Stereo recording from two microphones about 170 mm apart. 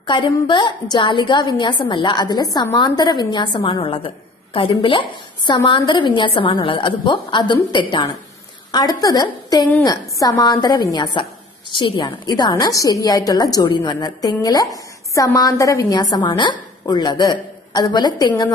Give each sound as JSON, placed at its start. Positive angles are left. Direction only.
{"t": 0.0, "sound": "a woman's voice", "side_deg": 30}